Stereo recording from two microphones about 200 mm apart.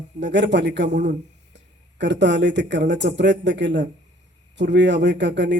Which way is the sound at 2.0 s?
60° right (ahead or behind).